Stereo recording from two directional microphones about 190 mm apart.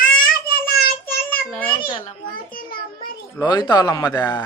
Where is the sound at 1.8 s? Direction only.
25° left (ahead or behind).